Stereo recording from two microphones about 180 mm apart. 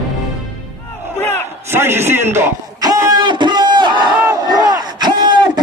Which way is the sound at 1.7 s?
15° right (ahead or behind).